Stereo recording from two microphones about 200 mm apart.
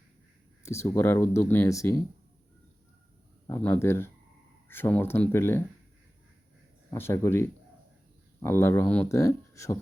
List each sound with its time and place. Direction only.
0.6 s speech: 15° left (ahead or behind)
3.4 s speech: 10° left (ahead or behind)
6.9 s speech: 10° left (ahead or behind)